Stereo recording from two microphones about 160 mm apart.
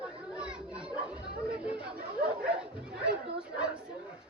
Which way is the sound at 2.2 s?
5° right (ahead or behind).